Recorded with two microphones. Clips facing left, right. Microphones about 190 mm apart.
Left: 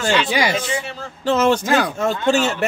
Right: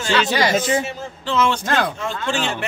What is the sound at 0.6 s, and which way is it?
Speech, 45° right (ahead or behind).